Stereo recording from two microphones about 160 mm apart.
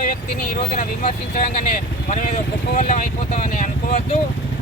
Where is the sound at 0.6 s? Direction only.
45° left (ahead or behind).